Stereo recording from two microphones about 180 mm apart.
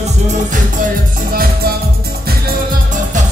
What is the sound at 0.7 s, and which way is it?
Music, 50° right (ahead or behind).